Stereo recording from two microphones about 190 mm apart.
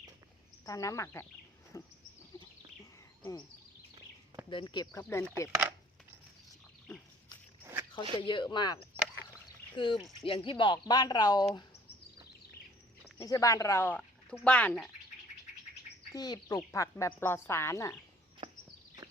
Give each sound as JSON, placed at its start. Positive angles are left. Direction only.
{"t": 0.6, "sound": "speech", "side_deg": 15}
{"t": 1.7, "sound": "a sound", "side_deg": 20}
{"t": 4.4, "sound": "speech", "side_deg": 25}
{"t": 4.9, "sound": "speech", "side_deg": 10}
{"t": 5.5, "sound": "a sound", "side_deg": -10}
{"t": 7.6, "sound": "a sound", "side_deg": -10}
{"t": 8.2, "sound": "speech", "side_deg": 25}
{"t": 13.1, "sound": "speech", "side_deg": 15}
{"t": 16.1, "sound": "speech", "side_deg": 20}